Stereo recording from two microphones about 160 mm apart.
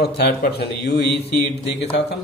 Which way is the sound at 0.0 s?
90° left.